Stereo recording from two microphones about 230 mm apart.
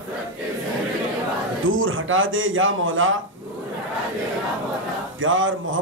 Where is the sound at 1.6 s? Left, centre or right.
Right.